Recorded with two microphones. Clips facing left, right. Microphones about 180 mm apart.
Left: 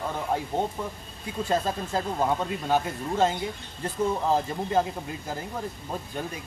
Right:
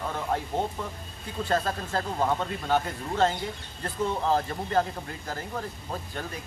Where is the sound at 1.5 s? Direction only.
15° left (ahead or behind).